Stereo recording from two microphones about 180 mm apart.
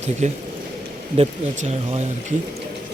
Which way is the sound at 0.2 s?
40° right (ahead or behind).